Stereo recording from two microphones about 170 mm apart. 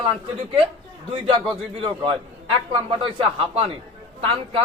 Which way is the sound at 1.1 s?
30° right (ahead or behind).